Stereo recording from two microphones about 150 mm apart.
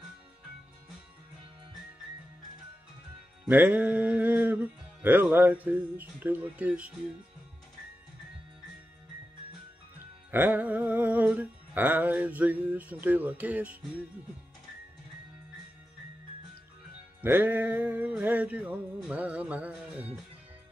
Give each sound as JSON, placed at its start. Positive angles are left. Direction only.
{"t": 3.4, "sound": "music", "side_deg": -10}
{"t": 10.3, "sound": "music", "side_deg": -10}
{"t": 17.2, "sound": "music", "side_deg": -10}